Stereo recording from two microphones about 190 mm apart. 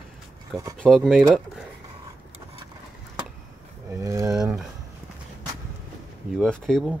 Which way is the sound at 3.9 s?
15° right (ahead or behind).